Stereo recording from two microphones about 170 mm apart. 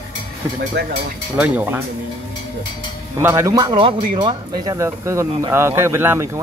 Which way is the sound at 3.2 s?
15° right (ahead or behind).